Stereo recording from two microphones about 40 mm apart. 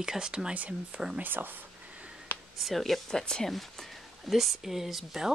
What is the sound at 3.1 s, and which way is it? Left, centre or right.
Speech, centre.